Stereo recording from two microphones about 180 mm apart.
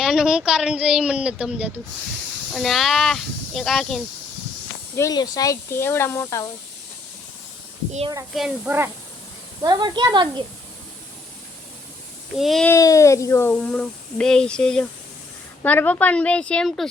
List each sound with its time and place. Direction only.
0.0 s a woman's voice: 5° right (ahead or behind)
4.9 s speech: 20° left (ahead or behind)
8.4 s speech: 5° right (ahead or behind)
9.6 s a woman's voice: 25° right (ahead or behind)
12.4 s a woman's voice: centre (ahead or behind)
12.7 s speech: 15° left (ahead or behind)